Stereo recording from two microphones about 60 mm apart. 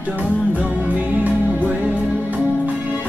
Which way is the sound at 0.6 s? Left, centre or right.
Right.